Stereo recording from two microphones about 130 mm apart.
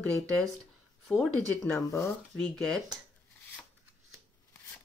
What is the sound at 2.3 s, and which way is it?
Speech, 5° left (ahead or behind).